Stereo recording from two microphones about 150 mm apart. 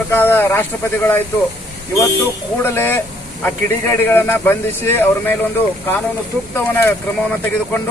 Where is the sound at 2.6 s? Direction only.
15° left (ahead or behind).